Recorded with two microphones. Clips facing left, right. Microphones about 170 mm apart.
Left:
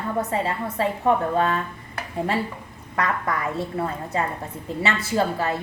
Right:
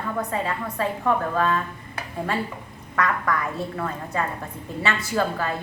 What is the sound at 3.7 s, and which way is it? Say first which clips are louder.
A woman's voice: left 2 dB; 25° left (ahead or behind).